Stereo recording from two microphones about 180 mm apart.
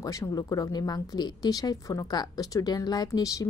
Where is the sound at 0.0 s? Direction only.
20° left (ahead or behind).